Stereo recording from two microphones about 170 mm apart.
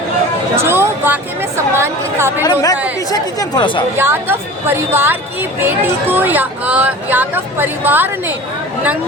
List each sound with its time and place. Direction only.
0.5 s a woman's voice: 15° right (ahead or behind)
2.4 s speech: 20° left (ahead or behind)
3.9 s a woman's voice: 15° right (ahead or behind)